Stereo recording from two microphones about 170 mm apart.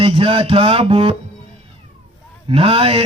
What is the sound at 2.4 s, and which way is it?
Speech, 35° right (ahead or behind).